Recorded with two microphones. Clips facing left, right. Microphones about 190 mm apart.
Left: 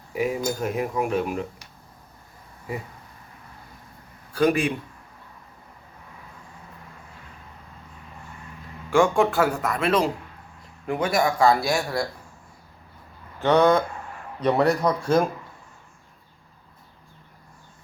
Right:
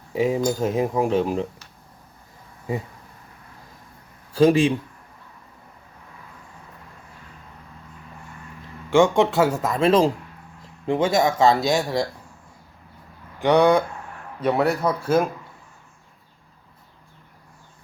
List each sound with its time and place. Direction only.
0.1 s speech: 25° right (ahead or behind)
4.4 s speech: 25° right (ahead or behind)
8.9 s speech: 20° right (ahead or behind)
13.4 s speech: 15° right (ahead or behind)